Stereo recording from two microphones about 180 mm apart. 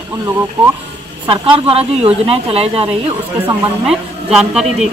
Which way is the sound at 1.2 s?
30° right (ahead or behind).